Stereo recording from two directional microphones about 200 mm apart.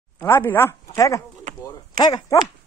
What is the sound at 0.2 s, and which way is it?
Speech, 10° left (ahead or behind).